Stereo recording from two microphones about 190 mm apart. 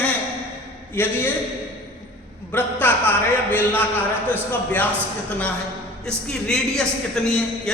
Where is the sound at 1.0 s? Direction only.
10° left (ahead or behind).